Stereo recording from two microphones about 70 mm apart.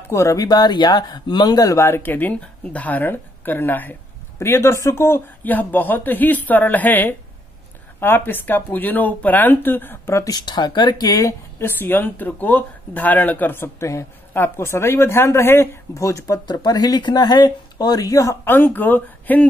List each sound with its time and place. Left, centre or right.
0.1 s speech: left
0.5 s speech: left
1.8 s speech: left
4.4 s a woman's voice: left
5.5 s speech: left
10.1 s speech: left
11.1 s speech: left
11.6 s a woman's voice: left
16.4 s speech: left
18.4 s speech: left